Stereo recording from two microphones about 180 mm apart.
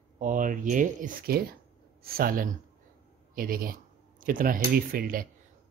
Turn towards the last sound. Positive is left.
turn(degrees=-55)  # may be behind; listen again after turning